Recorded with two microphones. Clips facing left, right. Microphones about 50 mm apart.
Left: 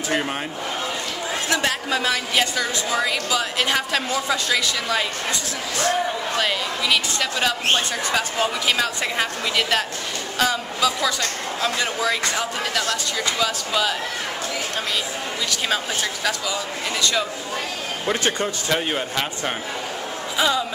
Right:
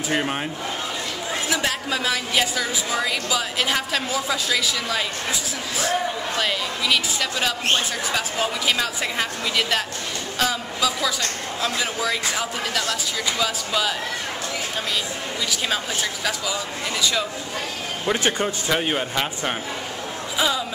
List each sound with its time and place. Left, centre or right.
0.1 s a woman's voice: centre
1.5 s a woman's voice: centre
15.5 s speech: centre
18.1 s speech: centre